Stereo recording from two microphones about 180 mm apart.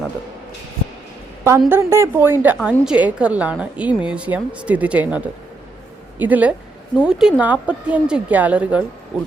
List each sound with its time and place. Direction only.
1.5 s a woman's voice: 15° right (ahead or behind)